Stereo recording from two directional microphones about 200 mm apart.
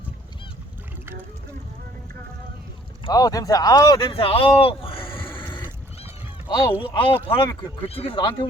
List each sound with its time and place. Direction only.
3.1 s speech: 20° left (ahead or behind)
4.1 s speech: 30° left (ahead or behind)
5.4 s neigh: 25° left (ahead or behind)
6.5 s speech: 25° left (ahead or behind)